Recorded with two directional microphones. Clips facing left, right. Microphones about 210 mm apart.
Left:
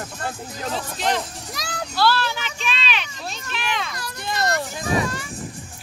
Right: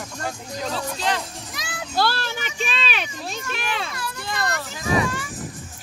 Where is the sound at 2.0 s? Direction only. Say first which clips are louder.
Left 2 dB; 45° right (ahead or behind).